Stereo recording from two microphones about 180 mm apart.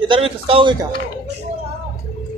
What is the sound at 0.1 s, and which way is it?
Speech, 30° right (ahead or behind).